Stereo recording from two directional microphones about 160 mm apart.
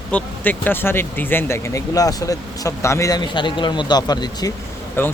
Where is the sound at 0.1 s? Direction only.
10° left (ahead or behind); by 4.5 s 25° left (ahead or behind).